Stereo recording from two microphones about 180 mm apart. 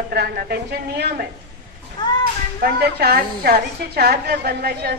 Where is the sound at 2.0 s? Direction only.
25° left (ahead or behind).